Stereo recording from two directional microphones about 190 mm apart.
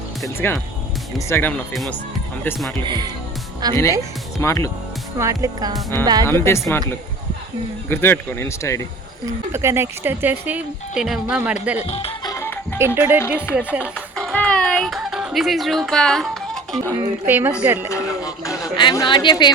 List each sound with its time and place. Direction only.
0.3 s speech: 10° left (ahead or behind)
1.7 s speech: centre (ahead or behind)
2.8 s speech: 25° right (ahead or behind)
4.4 s speech: 15° left (ahead or behind)
5.2 s speech: 20° right (ahead or behind)
6.2 s speech: 15° left (ahead or behind)
7.9 s speech: 10° left (ahead or behind)
9.5 s speech: 15° right (ahead or behind)
11.9 s music: 30° left (ahead or behind)
12.3 s music: 10° left (ahead or behind)
12.8 s speech: 10° right (ahead or behind)
13.9 s music: 5° left (ahead or behind)
16.9 s speech: 15° right (ahead or behind)
17.8 s a woman's voice: 15° left (ahead or behind)